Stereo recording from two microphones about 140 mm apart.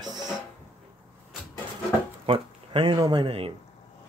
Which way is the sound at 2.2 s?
40° right (ahead or behind).